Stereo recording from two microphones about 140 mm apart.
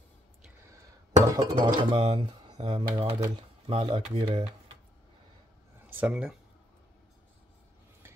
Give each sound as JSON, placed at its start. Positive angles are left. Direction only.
{"t": 1.2, "sound": "speech", "side_deg": -25}
{"t": 5.9, "sound": "speech", "side_deg": -10}